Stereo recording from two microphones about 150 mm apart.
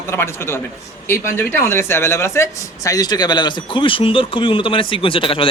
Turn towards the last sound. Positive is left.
turn(degrees=35)  # may be behind; listen again after turning